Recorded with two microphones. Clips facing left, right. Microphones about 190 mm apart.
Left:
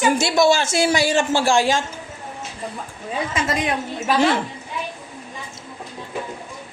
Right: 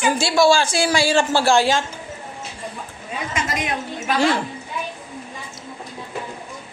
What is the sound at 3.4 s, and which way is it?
A man's voice, 30° left (ahead or behind).